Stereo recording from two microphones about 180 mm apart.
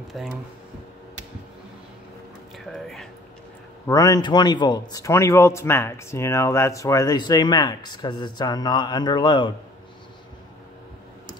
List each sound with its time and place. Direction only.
0.1 s speech: centre (ahead or behind)
2.6 s speech: centre (ahead or behind)
3.8 s a man's voice: 20° left (ahead or behind)